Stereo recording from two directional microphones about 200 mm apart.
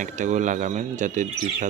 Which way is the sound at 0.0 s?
35° right (ahead or behind).